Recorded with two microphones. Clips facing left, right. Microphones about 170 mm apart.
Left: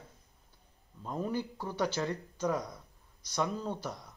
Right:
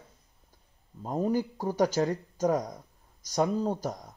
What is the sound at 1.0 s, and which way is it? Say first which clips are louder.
A man's voice: right 7 dB; 40° right (ahead or behind).